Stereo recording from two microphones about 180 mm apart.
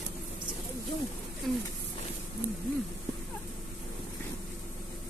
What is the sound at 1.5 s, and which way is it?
Speech, centre (ahead or behind).